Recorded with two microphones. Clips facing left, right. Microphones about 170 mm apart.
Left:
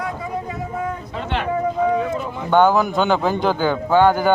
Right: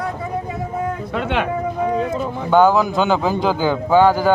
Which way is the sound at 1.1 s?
60° right (ahead or behind).